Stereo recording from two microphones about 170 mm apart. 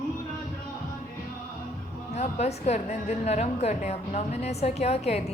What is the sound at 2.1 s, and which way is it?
A woman's voice, 40° left (ahead or behind).